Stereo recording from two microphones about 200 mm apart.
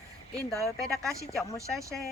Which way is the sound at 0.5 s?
Centre (ahead or behind).